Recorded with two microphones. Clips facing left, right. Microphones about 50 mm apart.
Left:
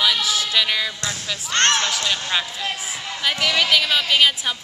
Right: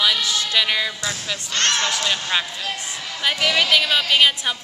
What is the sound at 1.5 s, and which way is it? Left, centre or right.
Speech, left.